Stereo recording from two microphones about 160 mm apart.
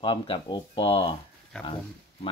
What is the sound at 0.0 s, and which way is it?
Speech, 30° left (ahead or behind).